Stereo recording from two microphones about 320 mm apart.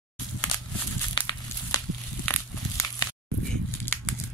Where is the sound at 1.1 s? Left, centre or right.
Centre.